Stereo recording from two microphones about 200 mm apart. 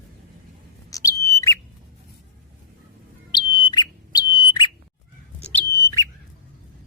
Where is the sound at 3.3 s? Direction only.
20° left (ahead or behind).